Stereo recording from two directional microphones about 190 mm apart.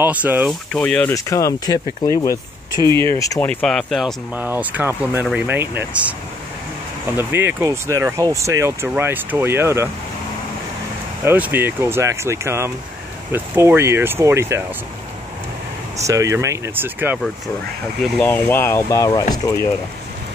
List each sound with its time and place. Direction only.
0.0 s speech: 10° right (ahead or behind)
0.7 s speech: 5° left (ahead or behind)
2.8 s speech: 25° right (ahead or behind)
3.2 s speech: 10° left (ahead or behind)
4.4 s speech: 10° right (ahead or behind)
7.2 s speech: 10° right (ahead or behind)
11.2 s speech: 10° right (ahead or behind)
16.1 s speech: 15° right (ahead or behind)
18.0 s speech: 5° left (ahead or behind)